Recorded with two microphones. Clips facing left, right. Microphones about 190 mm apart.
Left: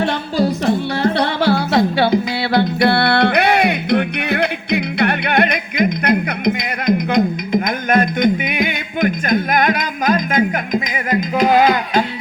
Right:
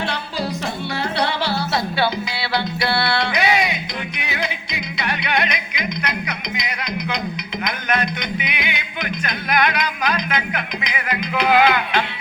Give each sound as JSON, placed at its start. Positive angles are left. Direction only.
{"t": 0.6, "sound": "music", "side_deg": 50}